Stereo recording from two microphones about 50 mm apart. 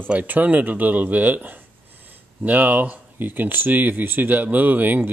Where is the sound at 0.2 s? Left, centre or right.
Right.